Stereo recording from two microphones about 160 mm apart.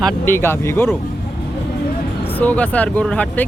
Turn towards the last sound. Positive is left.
turn(degrees=5)  # may be behind; listen again after turning